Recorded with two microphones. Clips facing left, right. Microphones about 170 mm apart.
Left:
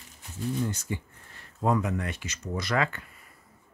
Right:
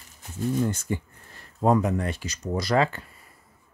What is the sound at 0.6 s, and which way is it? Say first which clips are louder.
Speech: right 5 dB; 50° right (ahead or behind).